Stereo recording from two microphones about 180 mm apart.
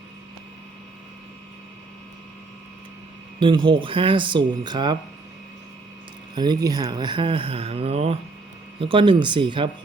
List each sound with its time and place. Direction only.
3.4 s speech: 25° right (ahead or behind)
6.3 s speech: 25° right (ahead or behind)